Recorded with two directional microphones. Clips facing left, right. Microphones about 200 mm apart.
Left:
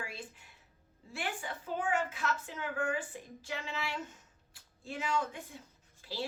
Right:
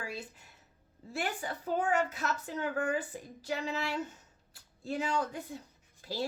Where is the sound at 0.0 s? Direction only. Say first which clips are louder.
Right 3 dB; 40° right (ahead or behind).